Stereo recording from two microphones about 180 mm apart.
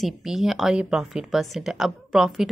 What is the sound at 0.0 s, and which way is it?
Speech, centre (ahead or behind).